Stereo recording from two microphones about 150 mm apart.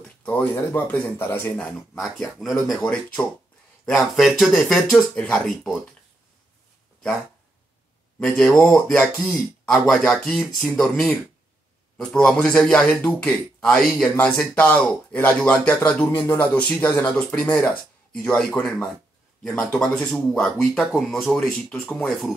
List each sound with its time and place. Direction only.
0.2 s speech: 10° left (ahead or behind)
1.7 s speech: centre (ahead or behind)
8.2 s speech: 5° left (ahead or behind)